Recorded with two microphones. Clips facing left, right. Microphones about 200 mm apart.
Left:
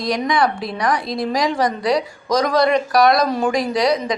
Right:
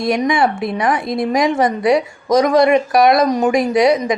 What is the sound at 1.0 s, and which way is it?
Speech, 50° right (ahead or behind).